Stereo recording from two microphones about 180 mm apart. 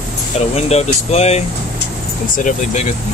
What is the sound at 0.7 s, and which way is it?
Speech, 35° left (ahead or behind).